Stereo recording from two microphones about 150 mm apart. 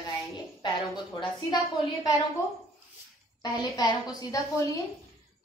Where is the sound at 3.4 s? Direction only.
25° left (ahead or behind).